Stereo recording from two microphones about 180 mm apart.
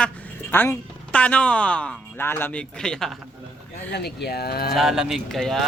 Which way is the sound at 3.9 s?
65° left (ahead or behind).